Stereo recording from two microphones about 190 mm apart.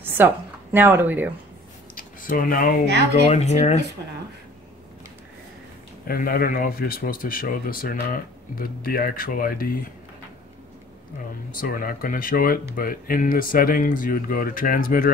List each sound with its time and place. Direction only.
0.0 s speech: 10° right (ahead or behind)
2.0 s speech: 45° left (ahead or behind)
3.3 s speech: 35° left (ahead or behind)
6.0 s speech: 50° left (ahead or behind)
11.6 s speech: 50° left (ahead or behind)